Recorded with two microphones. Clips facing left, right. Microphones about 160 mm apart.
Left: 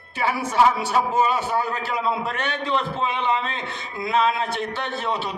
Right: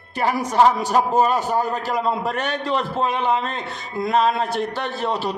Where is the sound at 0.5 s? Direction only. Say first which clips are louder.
Right 3 dB; 35° right (ahead or behind).